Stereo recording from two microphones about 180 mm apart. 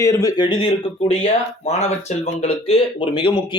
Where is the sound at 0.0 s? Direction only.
15° left (ahead or behind).